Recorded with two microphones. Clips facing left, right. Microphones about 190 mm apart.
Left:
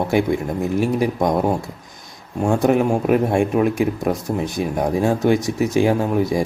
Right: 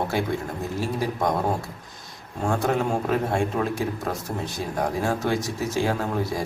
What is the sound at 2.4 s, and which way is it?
Speech, 15° left (ahead or behind).